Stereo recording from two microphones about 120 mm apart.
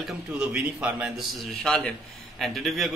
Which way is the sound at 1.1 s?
5° left (ahead or behind).